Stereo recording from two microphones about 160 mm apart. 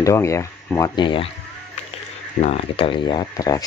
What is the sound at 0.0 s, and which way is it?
Speech, 20° left (ahead or behind).